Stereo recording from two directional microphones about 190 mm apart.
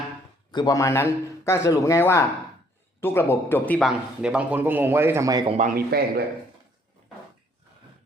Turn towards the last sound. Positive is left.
turn(degrees=-55)  # may be behind; listen again after turning